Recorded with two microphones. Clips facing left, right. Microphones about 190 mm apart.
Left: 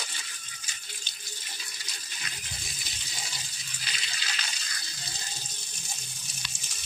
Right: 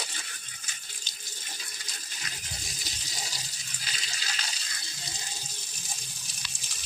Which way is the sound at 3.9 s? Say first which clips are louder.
Even; 40° right (ahead or behind).